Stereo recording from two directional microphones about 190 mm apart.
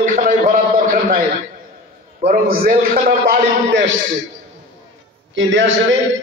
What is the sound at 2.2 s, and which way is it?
A man's voice, 40° right (ahead or behind).